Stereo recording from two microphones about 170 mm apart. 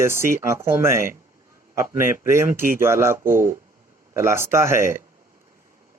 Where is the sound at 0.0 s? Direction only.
15° right (ahead or behind).